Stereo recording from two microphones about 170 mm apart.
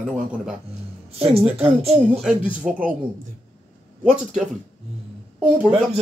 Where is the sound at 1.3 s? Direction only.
35° right (ahead or behind).